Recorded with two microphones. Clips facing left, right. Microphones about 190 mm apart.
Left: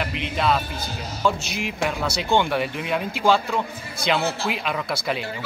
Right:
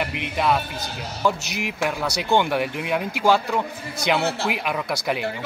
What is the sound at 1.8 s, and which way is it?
Speech, 10° right (ahead or behind).